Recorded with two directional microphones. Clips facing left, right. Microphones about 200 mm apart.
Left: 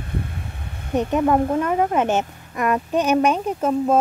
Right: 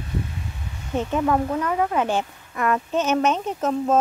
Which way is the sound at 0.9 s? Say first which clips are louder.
Left 3 dB; 20° left (ahead or behind).